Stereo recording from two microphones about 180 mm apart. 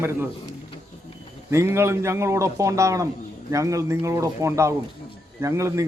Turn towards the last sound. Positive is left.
turn(degrees=-15)  # may be behind; listen again after turning